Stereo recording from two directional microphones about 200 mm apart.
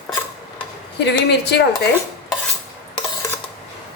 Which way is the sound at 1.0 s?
55° left (ahead or behind).